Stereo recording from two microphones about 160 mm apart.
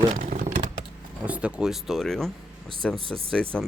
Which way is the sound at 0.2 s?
50° right (ahead or behind).